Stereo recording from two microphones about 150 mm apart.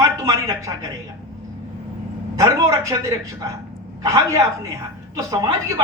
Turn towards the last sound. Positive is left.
turn(degrees=-20)  # may be behind; listen again after turning